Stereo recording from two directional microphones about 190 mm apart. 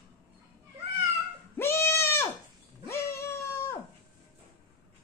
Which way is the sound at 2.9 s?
15° left (ahead or behind).